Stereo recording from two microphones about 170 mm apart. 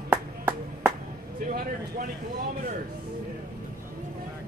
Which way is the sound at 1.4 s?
55° right (ahead or behind).